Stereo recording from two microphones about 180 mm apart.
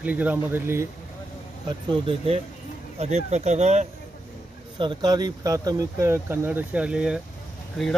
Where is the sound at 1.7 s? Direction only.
30° right (ahead or behind).